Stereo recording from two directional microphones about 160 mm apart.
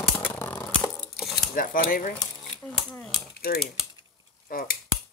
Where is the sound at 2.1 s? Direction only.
5° left (ahead or behind).